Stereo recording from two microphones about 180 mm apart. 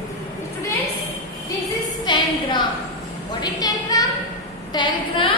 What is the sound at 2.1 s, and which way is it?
Speech, 25° left (ahead or behind).